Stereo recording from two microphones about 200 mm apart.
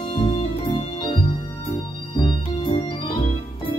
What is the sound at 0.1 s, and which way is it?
Music, 25° left (ahead or behind).